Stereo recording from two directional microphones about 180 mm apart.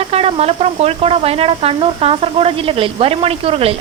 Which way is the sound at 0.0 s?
35° right (ahead or behind).